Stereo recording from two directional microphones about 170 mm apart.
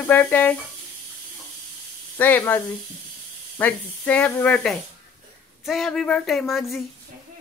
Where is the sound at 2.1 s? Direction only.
10° left (ahead or behind).